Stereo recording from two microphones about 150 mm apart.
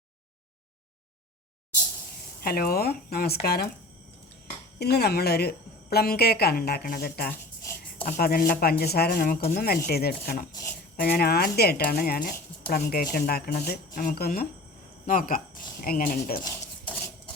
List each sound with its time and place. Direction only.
2.4 s a woman's voice: 80° left
4.8 s a woman's voice: 90° left
7.6 s a sound: 20° left (ahead or behind)
8.2 s a woman's voice: 90° left
15.0 s speech: 70° left (ahead or behind)